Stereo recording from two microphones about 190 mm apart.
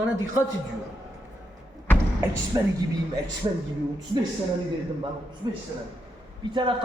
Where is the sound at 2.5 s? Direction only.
20° right (ahead or behind).